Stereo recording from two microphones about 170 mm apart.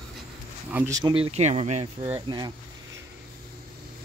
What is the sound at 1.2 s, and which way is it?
Speech, 35° right (ahead or behind).